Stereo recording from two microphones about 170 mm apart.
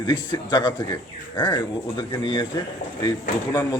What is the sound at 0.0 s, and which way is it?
A man's voice, 25° left (ahead or behind).